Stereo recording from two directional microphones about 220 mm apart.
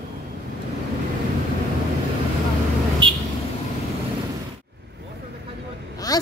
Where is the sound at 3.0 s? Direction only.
20° right (ahead or behind).